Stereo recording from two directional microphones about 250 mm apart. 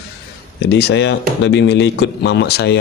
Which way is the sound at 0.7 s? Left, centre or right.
Left.